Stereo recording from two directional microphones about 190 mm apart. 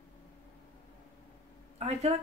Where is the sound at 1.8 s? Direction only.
35° right (ahead or behind).